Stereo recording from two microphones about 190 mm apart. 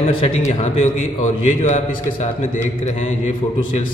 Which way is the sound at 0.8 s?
35° left (ahead or behind).